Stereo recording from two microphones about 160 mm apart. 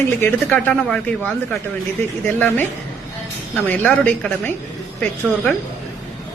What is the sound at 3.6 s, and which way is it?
Speech, 10° left (ahead or behind).